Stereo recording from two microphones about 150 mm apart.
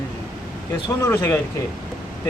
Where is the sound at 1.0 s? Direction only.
15° left (ahead or behind).